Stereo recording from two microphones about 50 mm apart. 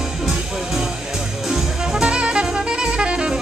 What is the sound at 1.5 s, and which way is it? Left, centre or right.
Saxophone, centre.